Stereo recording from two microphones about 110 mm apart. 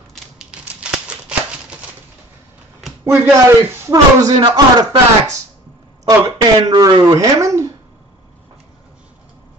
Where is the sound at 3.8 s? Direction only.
30° right (ahead or behind).